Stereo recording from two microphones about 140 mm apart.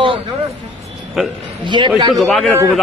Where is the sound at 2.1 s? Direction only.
Centre (ahead or behind).